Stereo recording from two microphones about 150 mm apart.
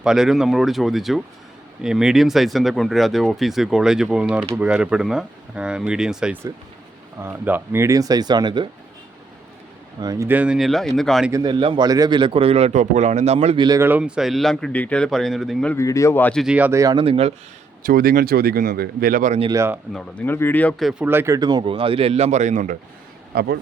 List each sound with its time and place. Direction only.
0.0 s speech: 5° right (ahead or behind); by 8.6 s 30° right (ahead or behind)
10.0 s speech: 25° right (ahead or behind)
10.2 s speech: 10° right (ahead or behind)
11.3 s a man's voice: 25° right (ahead or behind); by 13.6 s 45° right (ahead or behind)
13.6 s speech: 25° right (ahead or behind)
13.8 s speech: 10° right (ahead or behind)
15.7 s speech: 20° left (ahead or behind)
16.4 s speech: 10° right (ahead or behind)
16.8 s a man's voice: 35° right (ahead or behind)
17.8 s speech: 75° right (ahead or behind)
19.5 s speech: 20° right (ahead or behind)
19.9 s speech: 5° left (ahead or behind)
21.0 s a man's voice: 15° right (ahead or behind); by 22.8 s 60° right (ahead or behind)
23.3 s speech: 90° right